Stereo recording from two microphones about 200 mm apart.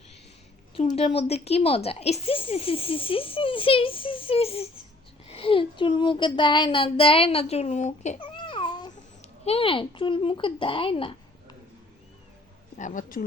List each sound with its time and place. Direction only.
0.8 s a woman's voice: 30° left (ahead or behind)
8.4 s babbling: 25° left (ahead or behind)
9.4 s speech: 30° left (ahead or behind)
12.7 s speech: 40° left (ahead or behind)